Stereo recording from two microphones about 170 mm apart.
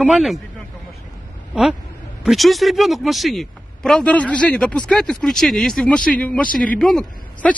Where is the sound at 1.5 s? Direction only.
5° right (ahead or behind).